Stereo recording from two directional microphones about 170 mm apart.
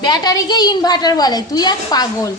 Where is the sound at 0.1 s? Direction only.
25° left (ahead or behind).